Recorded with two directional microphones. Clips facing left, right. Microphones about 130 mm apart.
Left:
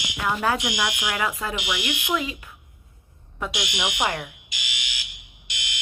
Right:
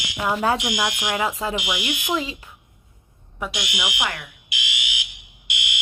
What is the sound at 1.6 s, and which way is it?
Speech, 5° right (ahead or behind).